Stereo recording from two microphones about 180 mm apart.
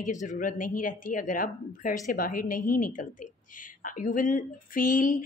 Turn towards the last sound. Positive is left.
turn(degrees=50)  # may be behind; listen again after turning